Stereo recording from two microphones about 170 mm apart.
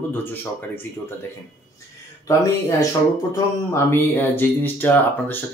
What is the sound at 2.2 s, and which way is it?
Speech, 20° left (ahead or behind).